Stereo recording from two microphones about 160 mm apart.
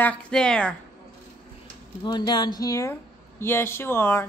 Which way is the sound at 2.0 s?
25° left (ahead or behind).